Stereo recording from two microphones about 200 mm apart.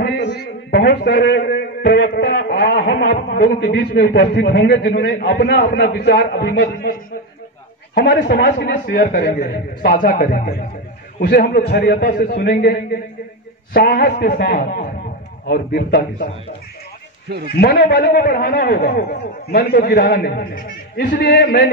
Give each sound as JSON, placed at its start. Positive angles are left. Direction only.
{"t": 0.0, "sound": "a sound", "side_deg": 55}
{"t": 3.3, "sound": "a man's voice", "side_deg": 55}
{"t": 17.5, "sound": "a man's voice", "side_deg": 50}